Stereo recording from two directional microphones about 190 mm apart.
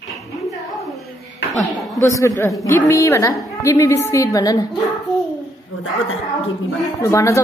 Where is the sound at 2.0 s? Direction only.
15° left (ahead or behind).